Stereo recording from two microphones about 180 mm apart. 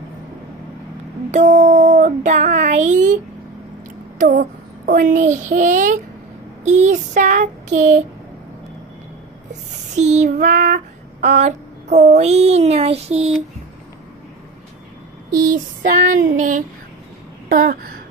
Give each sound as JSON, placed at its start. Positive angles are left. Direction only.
{"t": 1.3, "sound": "speech", "side_deg": -40}
{"t": 4.2, "sound": "a child's voice", "side_deg": -45}
{"t": 9.9, "sound": "speech", "side_deg": -40}
{"t": 15.4, "sound": "female singing", "side_deg": -50}
{"t": 17.5, "sound": "a sound", "side_deg": -55}